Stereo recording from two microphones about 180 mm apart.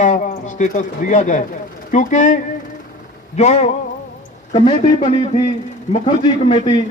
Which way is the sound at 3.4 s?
35° left (ahead or behind).